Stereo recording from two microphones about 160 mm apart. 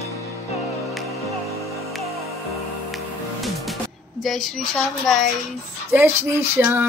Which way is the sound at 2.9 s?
Centre (ahead or behind).